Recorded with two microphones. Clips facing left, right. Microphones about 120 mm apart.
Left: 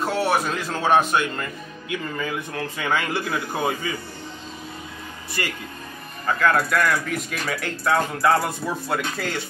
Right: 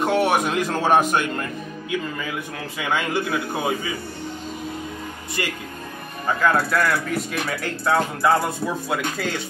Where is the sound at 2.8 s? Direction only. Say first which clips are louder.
Right 2 dB; 15° right (ahead or behind).